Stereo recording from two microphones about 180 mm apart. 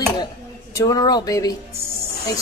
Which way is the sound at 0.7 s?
20° left (ahead or behind).